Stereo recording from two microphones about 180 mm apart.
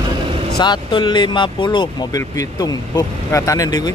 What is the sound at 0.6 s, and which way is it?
Speech, 25° left (ahead or behind).